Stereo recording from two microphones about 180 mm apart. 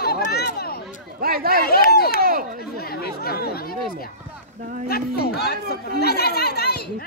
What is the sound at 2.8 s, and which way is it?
Chatter, 60° left (ahead or behind).